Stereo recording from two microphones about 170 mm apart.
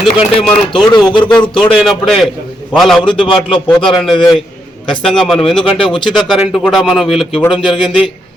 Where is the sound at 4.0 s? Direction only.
Centre (ahead or behind).